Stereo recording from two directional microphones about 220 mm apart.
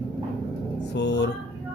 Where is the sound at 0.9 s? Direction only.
50° left (ahead or behind).